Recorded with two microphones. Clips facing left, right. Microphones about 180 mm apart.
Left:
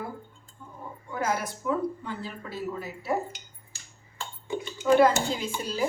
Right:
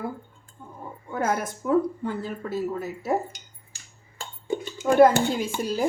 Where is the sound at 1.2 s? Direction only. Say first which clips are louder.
Right 3 dB; 50° right (ahead or behind).